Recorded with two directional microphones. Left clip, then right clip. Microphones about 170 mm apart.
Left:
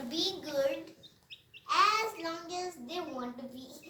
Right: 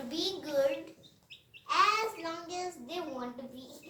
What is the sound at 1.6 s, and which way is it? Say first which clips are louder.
Child singing: even; 10° right (ahead or behind).